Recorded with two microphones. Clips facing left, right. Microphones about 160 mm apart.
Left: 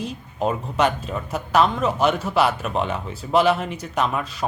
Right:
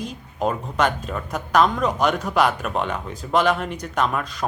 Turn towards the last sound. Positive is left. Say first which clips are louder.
# even
turn(degrees=5)  # may be behind; listen again after turning